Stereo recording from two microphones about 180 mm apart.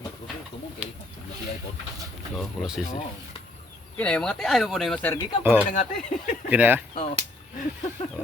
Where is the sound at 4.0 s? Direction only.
5° left (ahead or behind).